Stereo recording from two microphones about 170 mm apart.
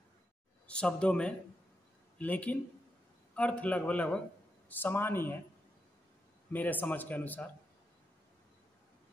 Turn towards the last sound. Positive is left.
turn(degrees=10)  # may be behind; listen again after turning